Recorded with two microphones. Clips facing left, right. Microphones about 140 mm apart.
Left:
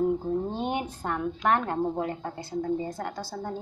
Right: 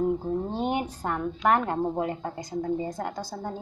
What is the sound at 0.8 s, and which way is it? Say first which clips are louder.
A woman's voice: right 1 dB; 5° right (ahead or behind).